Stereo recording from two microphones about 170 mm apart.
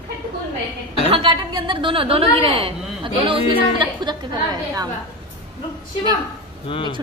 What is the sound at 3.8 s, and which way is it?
A woman's voice, 25° right (ahead or behind).